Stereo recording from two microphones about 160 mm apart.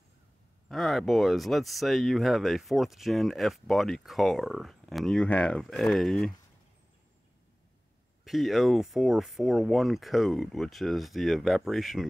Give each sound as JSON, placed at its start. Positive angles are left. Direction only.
{"t": 0.7, "sound": "speech", "side_deg": 0}
{"t": 8.3, "sound": "speech", "side_deg": 0}